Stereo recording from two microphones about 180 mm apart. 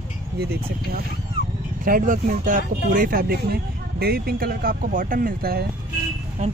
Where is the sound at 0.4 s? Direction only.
60° right (ahead or behind).